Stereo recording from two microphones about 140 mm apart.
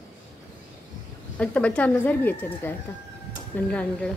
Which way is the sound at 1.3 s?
10° left (ahead or behind).